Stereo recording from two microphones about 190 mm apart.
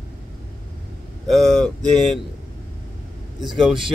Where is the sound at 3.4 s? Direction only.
Centre (ahead or behind).